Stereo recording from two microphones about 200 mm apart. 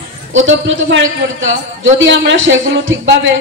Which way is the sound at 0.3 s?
70° right (ahead or behind).